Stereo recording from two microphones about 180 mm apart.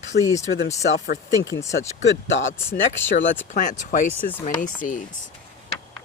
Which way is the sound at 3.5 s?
45° left (ahead or behind).